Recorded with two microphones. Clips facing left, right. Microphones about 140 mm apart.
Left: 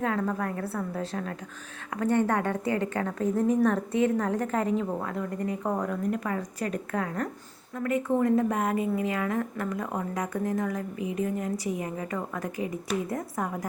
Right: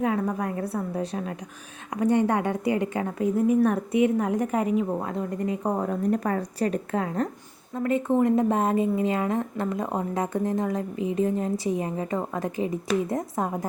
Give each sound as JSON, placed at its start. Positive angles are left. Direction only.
{"t": 0.0, "sound": "a woman's voice", "side_deg": -15}
{"t": 5.9, "sound": "a woman's voice", "side_deg": -35}